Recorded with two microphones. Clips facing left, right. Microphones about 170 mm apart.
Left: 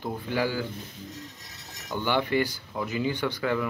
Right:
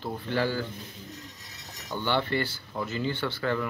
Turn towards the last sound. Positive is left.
turn(degrees=10)  # may be behind; listen again after turning